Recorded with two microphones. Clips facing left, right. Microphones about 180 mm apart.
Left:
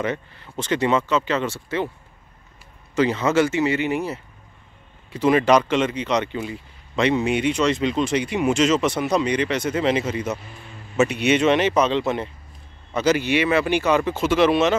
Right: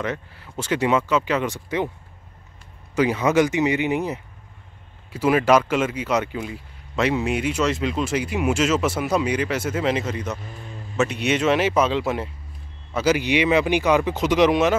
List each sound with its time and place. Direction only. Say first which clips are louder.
0.0 s speech: left 2 dB; 5° right (ahead or behind)
3.0 s speech: even; 10° right (ahead or behind)